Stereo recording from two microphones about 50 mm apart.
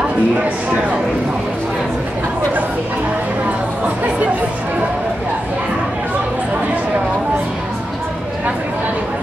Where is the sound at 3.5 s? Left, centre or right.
Right.